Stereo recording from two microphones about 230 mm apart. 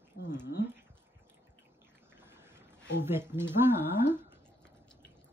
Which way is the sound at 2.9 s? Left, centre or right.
Centre.